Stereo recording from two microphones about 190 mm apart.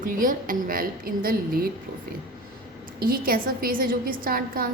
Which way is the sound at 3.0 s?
50° right (ahead or behind).